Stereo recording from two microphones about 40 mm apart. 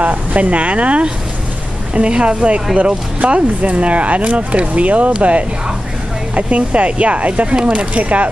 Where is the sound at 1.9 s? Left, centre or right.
Right.